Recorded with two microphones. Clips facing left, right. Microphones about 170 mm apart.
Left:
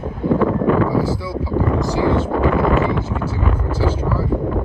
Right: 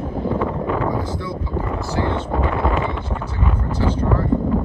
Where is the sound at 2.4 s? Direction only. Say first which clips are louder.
Left 5 dB; 20° right (ahead or behind).